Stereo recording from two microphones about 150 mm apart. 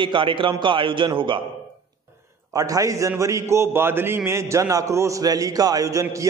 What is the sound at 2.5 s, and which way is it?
A man's voice, 25° right (ahead or behind).